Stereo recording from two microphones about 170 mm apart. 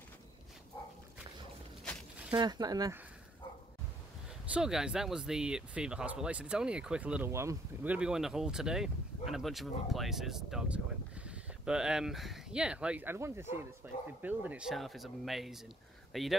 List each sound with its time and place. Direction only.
2.3 s speech: 25° right (ahead or behind)
4.6 s speech: 5° right (ahead or behind)